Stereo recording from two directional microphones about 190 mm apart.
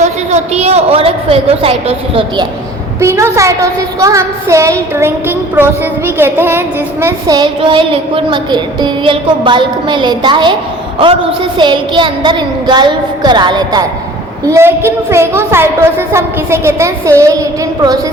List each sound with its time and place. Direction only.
0.0 s a woman's voice: 35° right (ahead or behind)
3.0 s a woman's voice: 15° right (ahead or behind)